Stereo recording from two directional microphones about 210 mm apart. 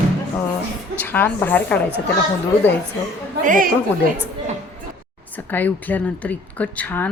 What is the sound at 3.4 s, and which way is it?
Speech, 40° right (ahead or behind).